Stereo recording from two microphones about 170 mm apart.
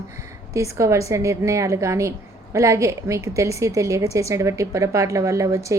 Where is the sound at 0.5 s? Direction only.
15° right (ahead or behind).